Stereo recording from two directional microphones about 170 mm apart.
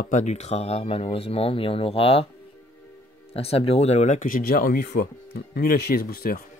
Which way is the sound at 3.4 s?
35° left (ahead or behind).